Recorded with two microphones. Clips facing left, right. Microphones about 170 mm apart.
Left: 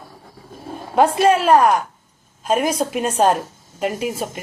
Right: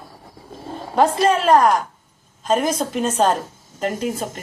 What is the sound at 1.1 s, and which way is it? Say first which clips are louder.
A woman's voice: left 2 dB; 10° left (ahead or behind).